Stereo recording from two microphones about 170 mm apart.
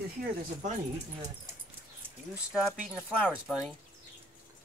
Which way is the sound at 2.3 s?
Centre (ahead or behind).